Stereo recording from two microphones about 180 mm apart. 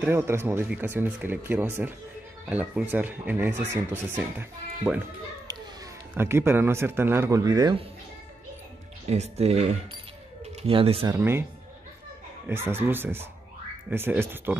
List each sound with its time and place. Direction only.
0.0 s speech: 15° right (ahead or behind)
6.1 s speech: 15° right (ahead or behind)
9.1 s speech: 35° right (ahead or behind)
11.1 s speech: 15° right (ahead or behind)
12.4 s speech: 15° right (ahead or behind)